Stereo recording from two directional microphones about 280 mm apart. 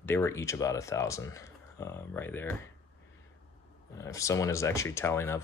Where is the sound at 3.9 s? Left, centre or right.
Centre.